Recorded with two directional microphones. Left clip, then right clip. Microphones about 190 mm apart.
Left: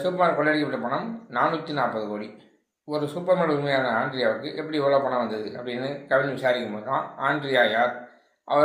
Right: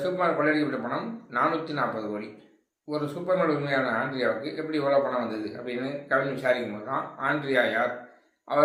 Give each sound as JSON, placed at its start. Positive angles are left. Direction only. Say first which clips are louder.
{"t": 0.0, "sound": "speech", "louder": "left 3 dB", "side_deg": 15}